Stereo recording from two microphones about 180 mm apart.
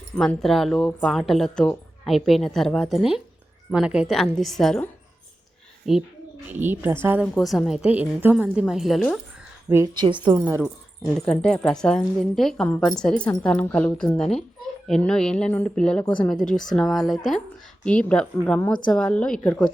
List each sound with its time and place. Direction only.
0.2 s a woman's voice: centre (ahead or behind)
7.3 s a woman's voice: centre (ahead or behind)
9.6 s speech: 20° right (ahead or behind)
11.3 s a woman's voice: 5° left (ahead or behind)